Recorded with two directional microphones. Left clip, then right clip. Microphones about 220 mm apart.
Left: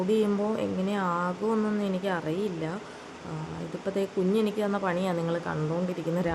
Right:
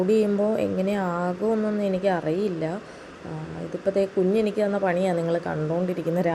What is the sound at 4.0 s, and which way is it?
Speech, 10° right (ahead or behind).